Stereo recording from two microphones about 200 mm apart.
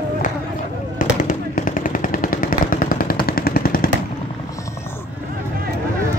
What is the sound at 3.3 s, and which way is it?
Vehicle, 50° left (ahead or behind).